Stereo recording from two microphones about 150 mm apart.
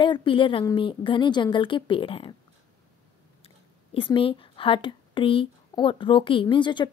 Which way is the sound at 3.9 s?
35° left (ahead or behind).